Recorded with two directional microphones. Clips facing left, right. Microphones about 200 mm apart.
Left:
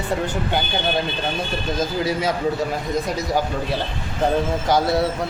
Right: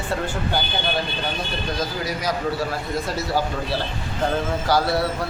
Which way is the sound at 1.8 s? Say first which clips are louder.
Left 7 dB; 25° left (ahead or behind).